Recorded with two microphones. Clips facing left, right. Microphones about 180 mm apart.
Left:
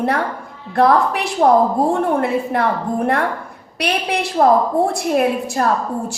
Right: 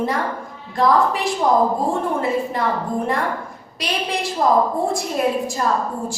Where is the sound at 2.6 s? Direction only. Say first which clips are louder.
Left 4 dB; 65° left (ahead or behind).